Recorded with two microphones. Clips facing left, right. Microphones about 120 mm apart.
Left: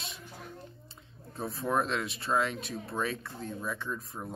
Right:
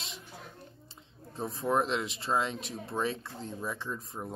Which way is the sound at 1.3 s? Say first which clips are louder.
Right 1 dB; 25° right (ahead or behind).